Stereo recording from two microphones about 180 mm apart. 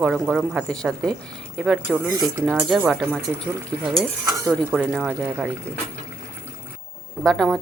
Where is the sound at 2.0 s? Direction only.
15° right (ahead or behind).